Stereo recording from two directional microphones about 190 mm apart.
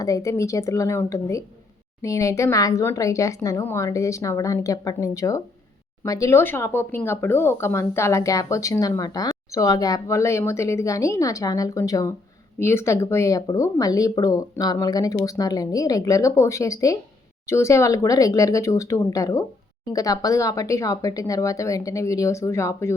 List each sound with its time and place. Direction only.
0.0 s speech: 15° left (ahead or behind)